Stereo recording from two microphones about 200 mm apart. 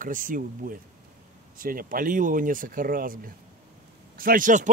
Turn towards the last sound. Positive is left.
turn(degrees=-40)  # may be behind; listen again after turning